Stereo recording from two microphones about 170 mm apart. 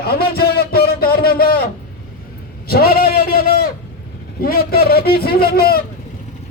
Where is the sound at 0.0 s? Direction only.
65° left (ahead or behind).